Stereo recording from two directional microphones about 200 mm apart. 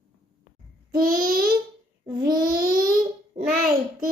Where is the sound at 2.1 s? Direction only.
20° right (ahead or behind).